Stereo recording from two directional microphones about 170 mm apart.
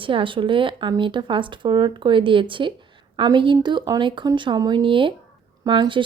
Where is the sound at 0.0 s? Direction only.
30° right (ahead or behind).